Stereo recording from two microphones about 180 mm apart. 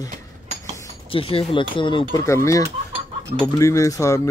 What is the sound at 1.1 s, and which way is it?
Speech, 30° left (ahead or behind).